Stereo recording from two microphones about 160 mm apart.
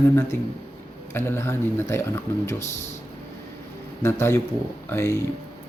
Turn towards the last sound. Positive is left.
turn(degrees=15)  # may be behind; listen again after turning